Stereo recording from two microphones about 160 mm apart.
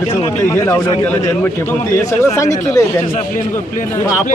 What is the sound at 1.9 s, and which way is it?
Speech, 20° left (ahead or behind).